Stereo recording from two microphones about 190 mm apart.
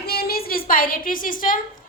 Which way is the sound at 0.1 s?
55° left (ahead or behind).